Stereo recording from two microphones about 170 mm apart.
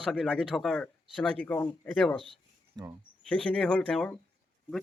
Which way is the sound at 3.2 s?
5° left (ahead or behind).